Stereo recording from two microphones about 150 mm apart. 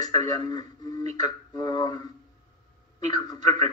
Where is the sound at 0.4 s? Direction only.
30° left (ahead or behind).